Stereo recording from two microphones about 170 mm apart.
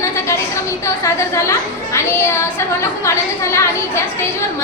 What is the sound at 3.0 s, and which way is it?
A woman's voice, 15° left (ahead or behind).